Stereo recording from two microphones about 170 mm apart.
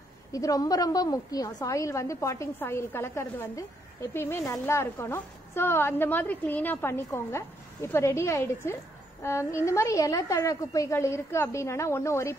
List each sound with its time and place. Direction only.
0.3 s a woman's voice: 20° left (ahead or behind)